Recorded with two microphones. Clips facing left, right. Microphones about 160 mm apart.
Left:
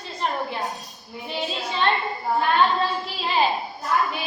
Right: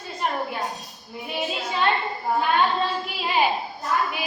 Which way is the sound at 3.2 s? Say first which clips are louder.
Even; 10° right (ahead or behind).